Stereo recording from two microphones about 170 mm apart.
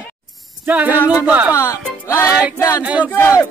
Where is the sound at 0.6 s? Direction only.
10° right (ahead or behind).